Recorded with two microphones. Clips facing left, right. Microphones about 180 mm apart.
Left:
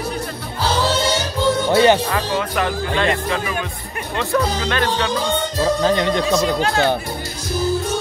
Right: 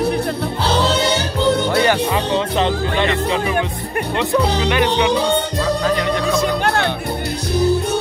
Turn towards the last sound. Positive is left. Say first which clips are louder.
# right 4 dB
turn(degrees=-65)  # may be behind; listen again after turning